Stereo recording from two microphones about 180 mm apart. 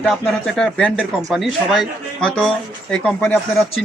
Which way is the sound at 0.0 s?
Centre (ahead or behind).